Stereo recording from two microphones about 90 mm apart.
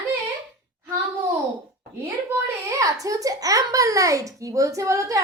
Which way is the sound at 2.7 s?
35° right (ahead or behind).